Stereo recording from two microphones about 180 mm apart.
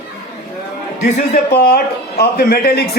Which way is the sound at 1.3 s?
60° left (ahead or behind).